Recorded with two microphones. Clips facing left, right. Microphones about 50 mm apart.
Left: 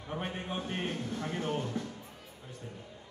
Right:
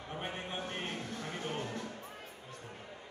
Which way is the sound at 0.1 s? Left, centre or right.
Centre.